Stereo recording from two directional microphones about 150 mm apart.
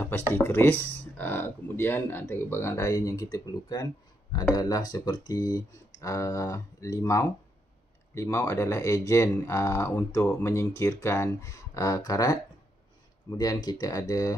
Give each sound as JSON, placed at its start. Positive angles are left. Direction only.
{"t": 0.3, "sound": "speech", "side_deg": 15}